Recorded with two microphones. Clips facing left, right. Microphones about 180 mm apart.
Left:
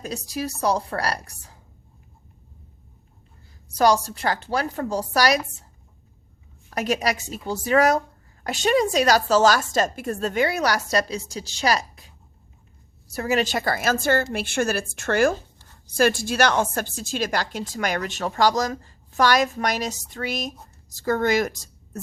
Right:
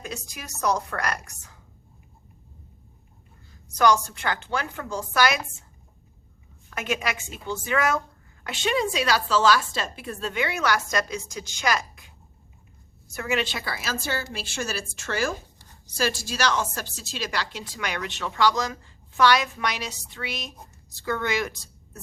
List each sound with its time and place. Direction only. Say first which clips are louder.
0.0 s a woman's voice: left 8 dB; 35° left (ahead or behind)
3.8 s a woman's voice: left 2 dB; 35° left (ahead or behind)
6.7 s a woman's voice: left 5 dB; 35° left (ahead or behind)